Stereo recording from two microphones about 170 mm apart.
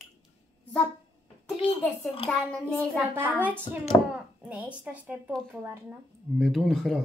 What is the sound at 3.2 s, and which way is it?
Speech, 10° right (ahead or behind).